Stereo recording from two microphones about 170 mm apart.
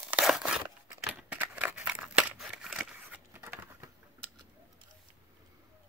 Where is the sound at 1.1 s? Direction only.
5° right (ahead or behind).